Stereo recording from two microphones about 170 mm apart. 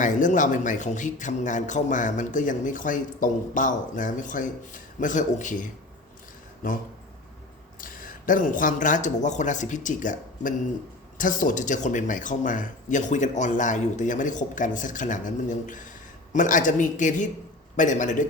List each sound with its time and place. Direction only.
0.0 s a man's voice: 50° left (ahead or behind)
7.8 s a man's voice: 55° left (ahead or behind)